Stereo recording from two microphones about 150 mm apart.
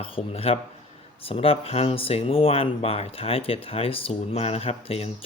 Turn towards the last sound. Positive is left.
turn(degrees=40)  # may be behind; listen again after turning